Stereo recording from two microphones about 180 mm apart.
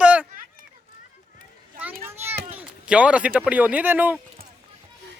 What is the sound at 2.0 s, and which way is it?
Children playing, 15° right (ahead or behind).